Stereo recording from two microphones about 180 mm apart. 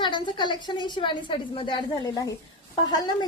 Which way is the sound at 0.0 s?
25° left (ahead or behind).